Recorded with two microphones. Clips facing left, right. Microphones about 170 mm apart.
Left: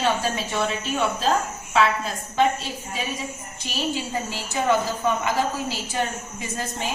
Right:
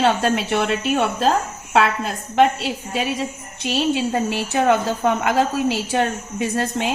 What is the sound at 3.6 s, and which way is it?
A woman's voice, 70° right (ahead or behind).